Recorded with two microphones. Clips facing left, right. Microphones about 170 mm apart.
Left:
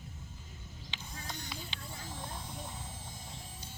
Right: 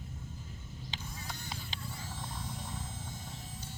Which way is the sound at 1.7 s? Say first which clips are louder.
Right 2 dB; 40° right (ahead or behind).